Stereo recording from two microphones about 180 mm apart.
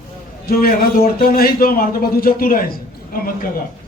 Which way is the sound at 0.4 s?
55° left (ahead or behind).